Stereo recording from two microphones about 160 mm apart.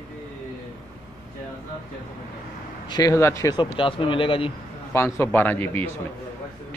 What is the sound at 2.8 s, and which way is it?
A man's voice, 25° left (ahead or behind).